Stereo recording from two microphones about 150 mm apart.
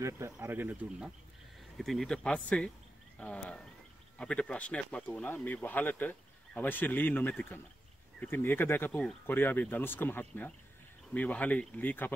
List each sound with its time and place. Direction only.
0.0 s speech: 15° right (ahead or behind)
1.8 s speech: centre (ahead or behind)